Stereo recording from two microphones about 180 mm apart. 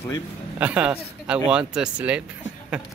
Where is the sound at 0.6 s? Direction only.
10° right (ahead or behind).